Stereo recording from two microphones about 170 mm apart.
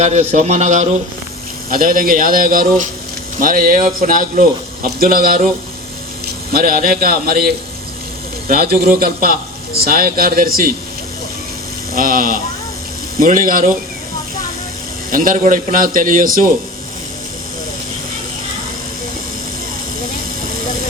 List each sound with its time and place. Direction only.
0.0 s a man's voice: 40° right (ahead or behind)
1.7 s a man's voice: 55° right (ahead or behind)
6.5 s speech: 55° right (ahead or behind)
11.9 s a man's voice: 55° right (ahead or behind)
15.1 s a man's voice: 50° right (ahead or behind)